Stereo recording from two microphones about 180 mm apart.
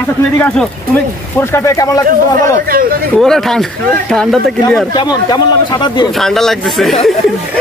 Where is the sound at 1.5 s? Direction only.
15° left (ahead or behind).